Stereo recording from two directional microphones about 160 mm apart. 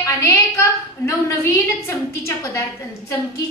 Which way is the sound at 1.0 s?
15° left (ahead or behind).